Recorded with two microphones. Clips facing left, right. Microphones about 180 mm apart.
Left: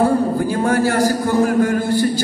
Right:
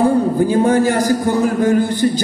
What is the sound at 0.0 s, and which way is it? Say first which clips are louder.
A man's voice: right 2 dB; 20° right (ahead or behind).